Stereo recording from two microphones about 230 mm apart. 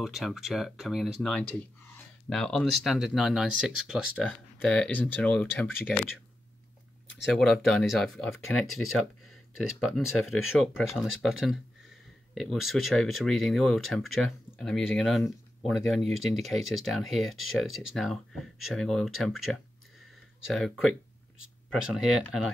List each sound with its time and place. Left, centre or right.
0.0 s speech: centre
7.2 s speech: centre
8.6 s speech: left
9.6 s speech: centre